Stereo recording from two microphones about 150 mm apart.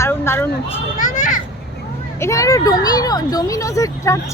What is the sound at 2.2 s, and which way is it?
Speech, 20° left (ahead or behind).